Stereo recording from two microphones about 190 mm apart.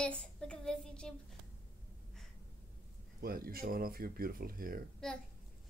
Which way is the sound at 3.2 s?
50° right (ahead or behind).